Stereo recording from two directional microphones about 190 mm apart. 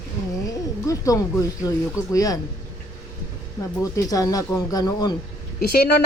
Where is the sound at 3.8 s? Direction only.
20° left (ahead or behind).